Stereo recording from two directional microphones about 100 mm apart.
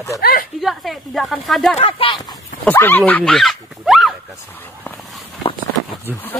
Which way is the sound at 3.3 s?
Centre (ahead or behind).